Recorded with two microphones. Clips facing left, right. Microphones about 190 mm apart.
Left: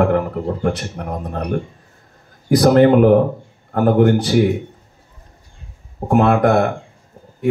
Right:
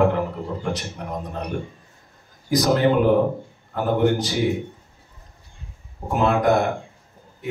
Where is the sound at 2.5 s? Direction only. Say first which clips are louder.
Left 7 dB; 60° left (ahead or behind).